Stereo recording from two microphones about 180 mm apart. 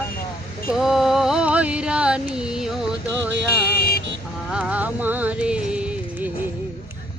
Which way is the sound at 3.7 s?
60° left (ahead or behind).